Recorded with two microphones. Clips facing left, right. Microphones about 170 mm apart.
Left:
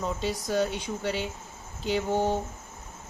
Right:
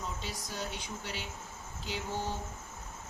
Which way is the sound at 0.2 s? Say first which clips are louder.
Left 13 dB; 70° left (ahead or behind).